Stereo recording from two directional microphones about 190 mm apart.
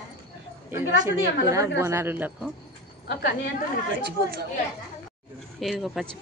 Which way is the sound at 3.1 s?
60° left (ahead or behind).